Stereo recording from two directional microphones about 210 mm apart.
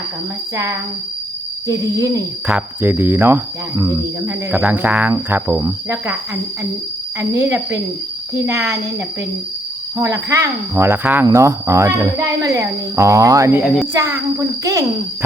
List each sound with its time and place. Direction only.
1.6 s speech: 15° right (ahead or behind)
7.2 s speech: 10° right (ahead or behind)
10.0 s speech: 15° right (ahead or behind)